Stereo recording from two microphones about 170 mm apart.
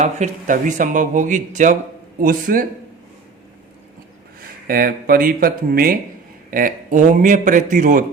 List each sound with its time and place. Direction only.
0.0 s speech: 45° right (ahead or behind)
4.6 s speech: 60° right (ahead or behind)